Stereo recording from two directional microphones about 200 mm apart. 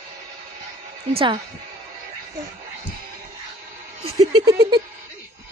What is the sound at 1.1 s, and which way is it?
Speech, 25° right (ahead or behind).